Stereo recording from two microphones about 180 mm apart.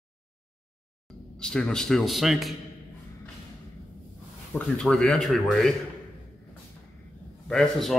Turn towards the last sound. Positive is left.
turn(degrees=0)  # may be behind; listen again after turning